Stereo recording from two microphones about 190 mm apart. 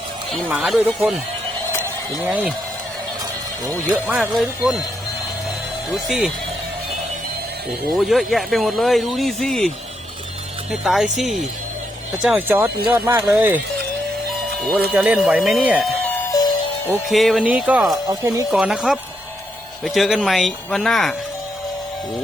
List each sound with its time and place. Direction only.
0.3 s speech: centre (ahead or behind)
2.2 s speech: 5° right (ahead or behind)
3.9 s speech: centre (ahead or behind)
5.9 s speech: 5° right (ahead or behind)
7.9 s speech: centre (ahead or behind)
14.9 s speech: 5° right (ahead or behind)
17.1 s speech: centre (ahead or behind)
18.1 s speech: 20° right (ahead or behind)
18.5 s speech: centre (ahead or behind)